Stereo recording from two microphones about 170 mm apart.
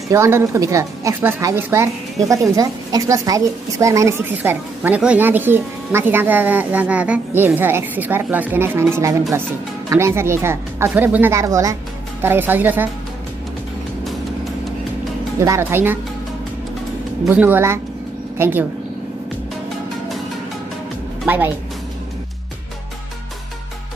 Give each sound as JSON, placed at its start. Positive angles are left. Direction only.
{"t": 0.1, "sound": "a woman's voice", "side_deg": -15}
{"t": 15.4, "sound": "a woman's voice", "side_deg": -15}
{"t": 17.3, "sound": "a woman's voice", "side_deg": -10}